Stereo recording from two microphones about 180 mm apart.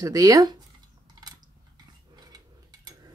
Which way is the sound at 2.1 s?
20° right (ahead or behind).